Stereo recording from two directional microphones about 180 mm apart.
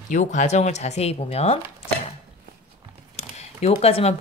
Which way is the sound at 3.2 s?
40° left (ahead or behind).